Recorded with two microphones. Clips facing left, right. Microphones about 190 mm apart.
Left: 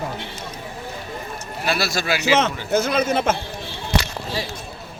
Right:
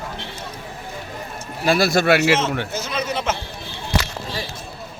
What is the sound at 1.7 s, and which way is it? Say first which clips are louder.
Speech: right 7 dB; 50° right (ahead or behind).